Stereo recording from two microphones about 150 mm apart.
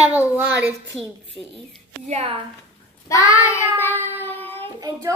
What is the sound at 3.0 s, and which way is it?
Child singing, 20° left (ahead or behind).